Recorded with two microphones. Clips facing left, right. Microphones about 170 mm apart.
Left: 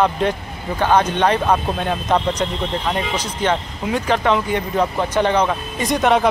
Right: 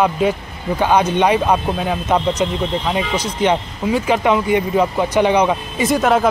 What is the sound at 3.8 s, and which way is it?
Speech, 5° right (ahead or behind).